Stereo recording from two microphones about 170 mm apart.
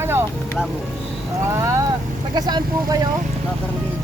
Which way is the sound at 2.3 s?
25° right (ahead or behind).